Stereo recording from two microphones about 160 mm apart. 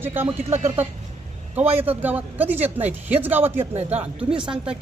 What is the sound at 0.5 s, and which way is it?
Speech, 45° right (ahead or behind).